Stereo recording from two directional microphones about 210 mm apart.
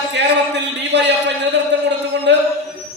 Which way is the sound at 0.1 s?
55° right (ahead or behind).